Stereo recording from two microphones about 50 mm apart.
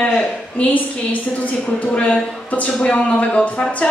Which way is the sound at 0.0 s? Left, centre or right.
Left.